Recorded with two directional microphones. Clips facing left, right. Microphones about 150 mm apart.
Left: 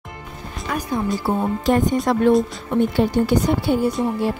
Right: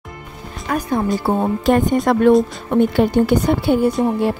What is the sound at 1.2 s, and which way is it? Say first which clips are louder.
A woman's voice: right 3 dB; 60° right (ahead or behind).